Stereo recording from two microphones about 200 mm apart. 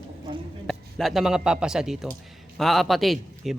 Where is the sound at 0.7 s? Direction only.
Centre (ahead or behind).